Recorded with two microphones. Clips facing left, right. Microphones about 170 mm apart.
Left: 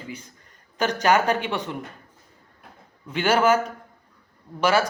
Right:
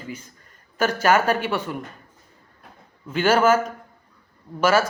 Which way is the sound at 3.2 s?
10° left (ahead or behind).